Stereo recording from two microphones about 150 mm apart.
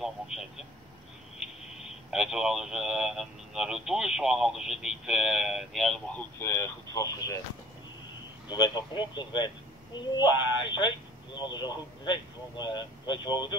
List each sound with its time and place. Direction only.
0.0 s speech: 5° right (ahead or behind)
6.4 s speech: 15° left (ahead or behind)
8.5 s speech: 30° left (ahead or behind)